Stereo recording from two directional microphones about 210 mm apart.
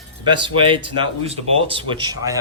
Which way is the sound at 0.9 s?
25° right (ahead or behind).